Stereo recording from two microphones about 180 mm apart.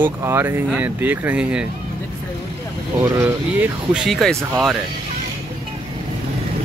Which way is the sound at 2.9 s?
15° right (ahead or behind).